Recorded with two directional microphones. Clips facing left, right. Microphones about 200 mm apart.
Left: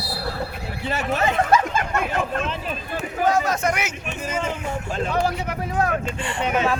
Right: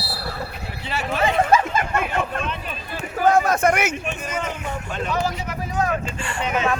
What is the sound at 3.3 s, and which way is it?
Speech, 55° right (ahead or behind).